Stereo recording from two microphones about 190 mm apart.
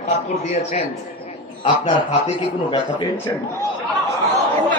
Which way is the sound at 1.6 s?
25° left (ahead or behind).